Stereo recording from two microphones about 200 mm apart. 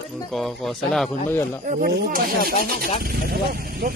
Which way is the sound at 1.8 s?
45° right (ahead or behind).